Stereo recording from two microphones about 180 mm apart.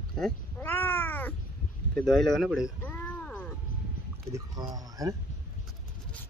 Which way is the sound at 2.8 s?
5° left (ahead or behind).